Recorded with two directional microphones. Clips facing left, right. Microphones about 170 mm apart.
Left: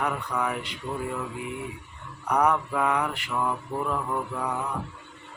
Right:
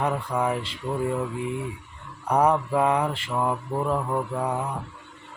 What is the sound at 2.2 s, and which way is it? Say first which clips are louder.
Speech: right 3 dB; 30° right (ahead or behind).